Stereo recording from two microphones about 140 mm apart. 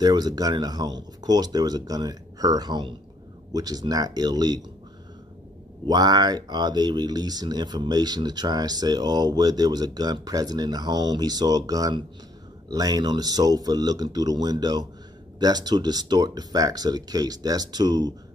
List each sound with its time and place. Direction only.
0.0 s speech: 30° right (ahead or behind)
5.9 s speech: 30° right (ahead or behind)